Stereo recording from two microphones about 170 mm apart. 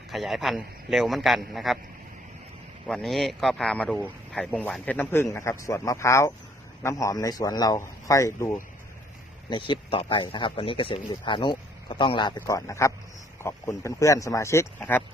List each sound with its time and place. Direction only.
0.1 s a man's voice: centre (ahead or behind)
2.8 s speech: centre (ahead or behind); by 8.6 s 15° left (ahead or behind)
9.5 s speech: 30° left (ahead or behind); by 15.0 s 10° left (ahead or behind)